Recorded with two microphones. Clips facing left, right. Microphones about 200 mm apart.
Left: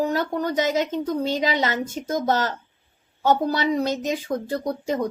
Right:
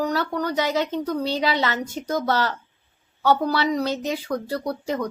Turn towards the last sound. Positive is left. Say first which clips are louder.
# left 2 dB
turn(degrees=20)  # may be behind; listen again after turning